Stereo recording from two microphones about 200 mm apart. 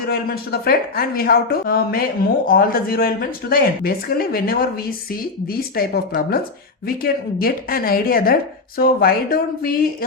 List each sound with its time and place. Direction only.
0.0 s speech: 50° left (ahead or behind)